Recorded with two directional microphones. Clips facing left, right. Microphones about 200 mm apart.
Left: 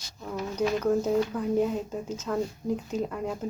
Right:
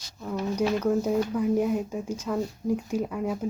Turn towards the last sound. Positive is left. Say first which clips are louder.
# right 2 dB
turn(degrees=-5)  # may be behind; listen again after turning